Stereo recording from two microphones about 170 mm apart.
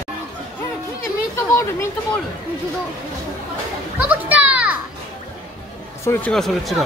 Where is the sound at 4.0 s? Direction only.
10° right (ahead or behind).